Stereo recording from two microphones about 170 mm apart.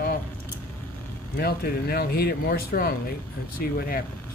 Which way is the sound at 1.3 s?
65° left (ahead or behind).